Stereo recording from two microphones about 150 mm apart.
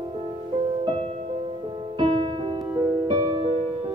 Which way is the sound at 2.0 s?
40° right (ahead or behind).